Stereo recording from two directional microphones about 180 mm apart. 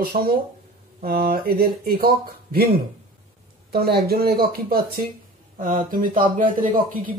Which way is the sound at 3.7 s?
60° right (ahead or behind).